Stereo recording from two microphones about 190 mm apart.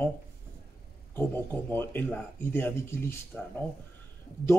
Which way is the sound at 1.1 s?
10° left (ahead or behind).